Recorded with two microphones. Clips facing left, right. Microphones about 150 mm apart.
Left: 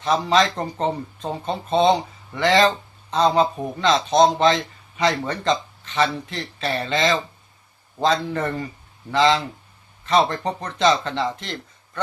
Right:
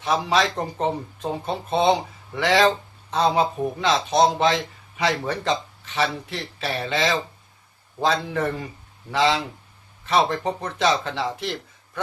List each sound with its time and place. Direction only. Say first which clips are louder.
0.0 s speech: left 2 dB; 10° right (ahead or behind)